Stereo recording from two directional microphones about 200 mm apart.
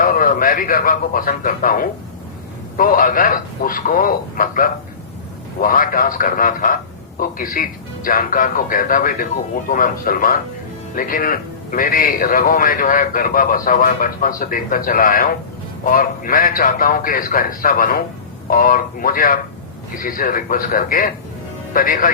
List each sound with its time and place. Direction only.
0.0 s a man's voice: 45° left (ahead or behind)